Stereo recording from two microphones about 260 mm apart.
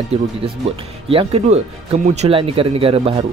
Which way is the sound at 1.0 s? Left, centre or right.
Right.